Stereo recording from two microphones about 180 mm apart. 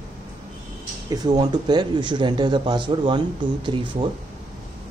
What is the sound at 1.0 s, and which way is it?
Speech, 20° right (ahead or behind).